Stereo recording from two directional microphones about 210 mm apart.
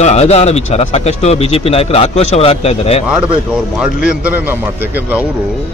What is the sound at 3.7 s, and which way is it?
A man's voice, 5° right (ahead or behind).